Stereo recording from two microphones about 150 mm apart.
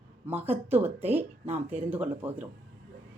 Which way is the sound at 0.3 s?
15° right (ahead or behind).